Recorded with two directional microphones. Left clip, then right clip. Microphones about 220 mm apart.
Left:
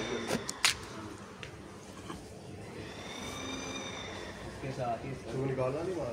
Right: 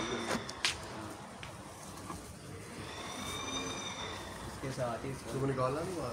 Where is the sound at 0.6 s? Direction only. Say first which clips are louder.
Left 5 dB; 25° left (ahead or behind).